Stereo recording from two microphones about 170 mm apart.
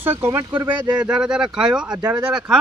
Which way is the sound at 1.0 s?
5° right (ahead or behind).